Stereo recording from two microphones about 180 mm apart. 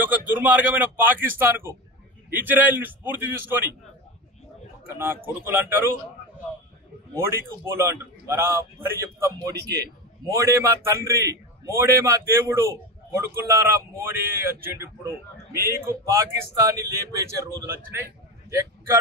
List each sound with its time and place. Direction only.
0.3 s a man's voice: 10° right (ahead or behind)
4.8 s a man's voice: 15° right (ahead or behind)
7.2 s a man's voice: 15° right (ahead or behind)